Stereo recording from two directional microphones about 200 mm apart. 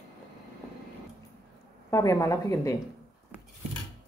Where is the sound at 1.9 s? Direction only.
15° left (ahead or behind).